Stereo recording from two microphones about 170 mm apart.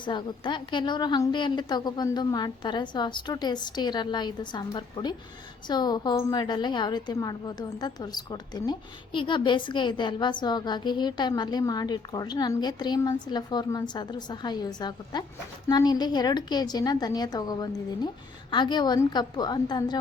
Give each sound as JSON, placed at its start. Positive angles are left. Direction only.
{"t": 0.0, "sound": "a woman's voice", "side_deg": 25}